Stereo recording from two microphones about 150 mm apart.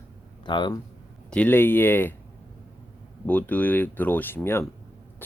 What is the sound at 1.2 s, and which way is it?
Speech, 10° left (ahead or behind).